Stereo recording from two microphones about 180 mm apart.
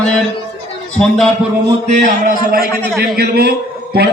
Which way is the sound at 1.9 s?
45° right (ahead or behind).